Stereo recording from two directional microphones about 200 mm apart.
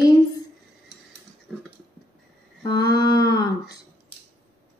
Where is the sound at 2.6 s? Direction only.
20° left (ahead or behind).